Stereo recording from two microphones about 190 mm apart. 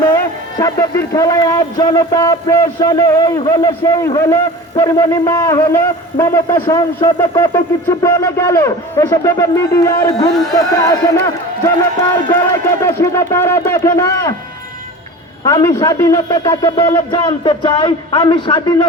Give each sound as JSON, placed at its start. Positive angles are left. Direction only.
{"t": 0.6, "sound": "a man's voice", "side_deg": 15}
{"t": 12.3, "sound": "a man's voice", "side_deg": 15}
{"t": 15.4, "sound": "a man's voice", "side_deg": 20}